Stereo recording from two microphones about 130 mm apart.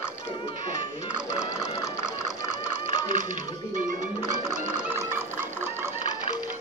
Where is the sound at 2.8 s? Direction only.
90° right.